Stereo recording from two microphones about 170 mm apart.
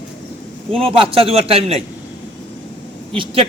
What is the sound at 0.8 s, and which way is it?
A man's voice, 35° right (ahead or behind).